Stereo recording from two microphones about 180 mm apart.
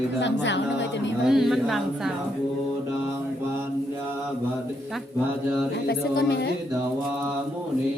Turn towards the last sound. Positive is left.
turn(degrees=65)  # may be behind; listen again after turning